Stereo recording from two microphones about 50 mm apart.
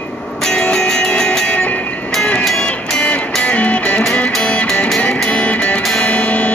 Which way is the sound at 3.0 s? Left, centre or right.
Left.